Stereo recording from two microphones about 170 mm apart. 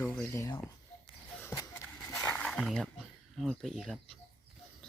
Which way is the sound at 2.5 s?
Centre (ahead or behind).